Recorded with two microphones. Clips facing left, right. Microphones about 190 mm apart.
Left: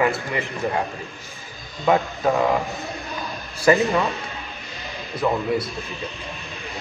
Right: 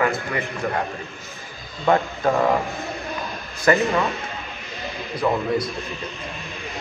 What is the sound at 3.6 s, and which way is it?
Speech, 15° left (ahead or behind).